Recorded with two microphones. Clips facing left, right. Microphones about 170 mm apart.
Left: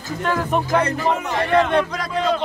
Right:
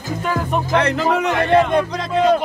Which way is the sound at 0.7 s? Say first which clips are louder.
Right 5 dB; 80° right.